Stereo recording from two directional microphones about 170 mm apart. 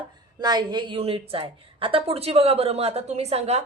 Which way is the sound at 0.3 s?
25° right (ahead or behind).